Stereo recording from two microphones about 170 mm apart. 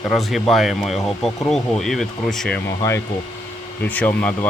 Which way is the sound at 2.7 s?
15° left (ahead or behind).